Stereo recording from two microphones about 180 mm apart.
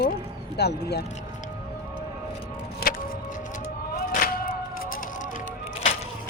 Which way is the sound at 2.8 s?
50° left (ahead or behind).